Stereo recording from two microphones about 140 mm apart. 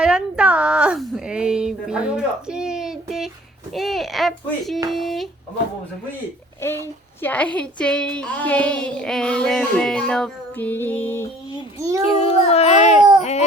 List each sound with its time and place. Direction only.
0.0 s a woman's voice: 5° right (ahead or behind)
6.6 s a woman's voice: 15° left (ahead or behind)
11.8 s a child's voice: 20° right (ahead or behind)
12.0 s a child's voice: 45° left (ahead or behind)